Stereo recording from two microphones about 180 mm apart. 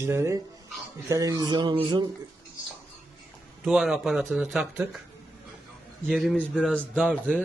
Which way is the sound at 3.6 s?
5° right (ahead or behind).